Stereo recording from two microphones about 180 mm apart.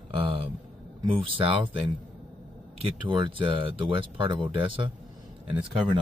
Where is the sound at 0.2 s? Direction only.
30° right (ahead or behind).